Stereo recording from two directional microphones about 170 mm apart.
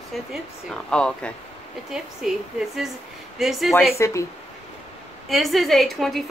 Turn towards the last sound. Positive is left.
turn(degrees=0)  # may be behind; listen again after turning